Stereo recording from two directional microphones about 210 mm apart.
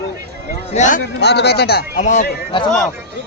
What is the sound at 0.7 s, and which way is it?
Speech, 35° left (ahead or behind).